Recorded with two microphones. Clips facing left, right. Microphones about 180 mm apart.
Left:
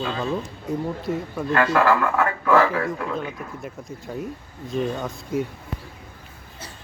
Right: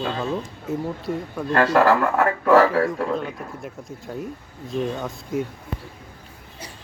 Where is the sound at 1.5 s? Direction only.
35° right (ahead or behind).